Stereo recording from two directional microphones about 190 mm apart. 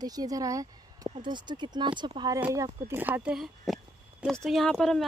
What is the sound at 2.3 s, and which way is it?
Speech, 15° right (ahead or behind).